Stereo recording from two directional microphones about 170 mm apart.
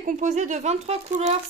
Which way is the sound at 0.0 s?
45° right (ahead or behind).